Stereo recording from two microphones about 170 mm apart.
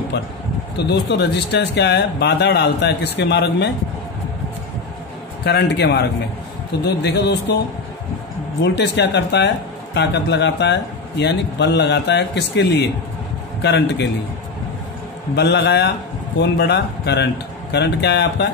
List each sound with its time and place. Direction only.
0.8 s a man's voice: 80° left
5.4 s a man's voice: 85° left
8.6 s a man's voice: 90° left
15.3 s a man's voice: 85° left